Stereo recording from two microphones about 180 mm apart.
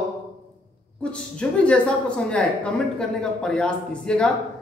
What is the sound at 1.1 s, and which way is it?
Speech, 5° left (ahead or behind).